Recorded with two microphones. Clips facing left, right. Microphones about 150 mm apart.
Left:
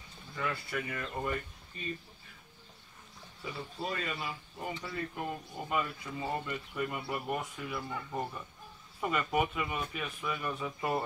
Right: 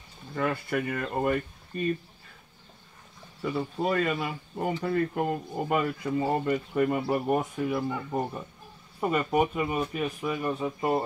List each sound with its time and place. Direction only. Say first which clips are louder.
0.3 s speech: right 8 dB; 55° right (ahead or behind)
3.4 s speech: right 10 dB; 60° right (ahead or behind); by 11.1 s 25° right (ahead or behind)